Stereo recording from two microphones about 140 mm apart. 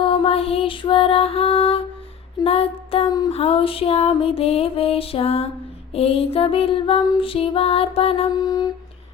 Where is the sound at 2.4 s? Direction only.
45° left (ahead or behind).